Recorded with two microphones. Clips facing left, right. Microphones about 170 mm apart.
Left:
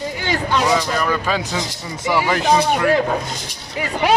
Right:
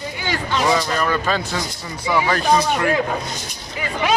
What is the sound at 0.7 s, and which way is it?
Speech, 5° left (ahead or behind).